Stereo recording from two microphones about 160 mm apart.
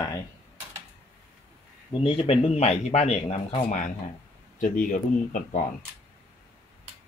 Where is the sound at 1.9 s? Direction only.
35° left (ahead or behind); by 5.6 s 55° left (ahead or behind).